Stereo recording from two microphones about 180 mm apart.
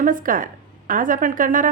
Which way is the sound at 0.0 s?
50° right (ahead or behind).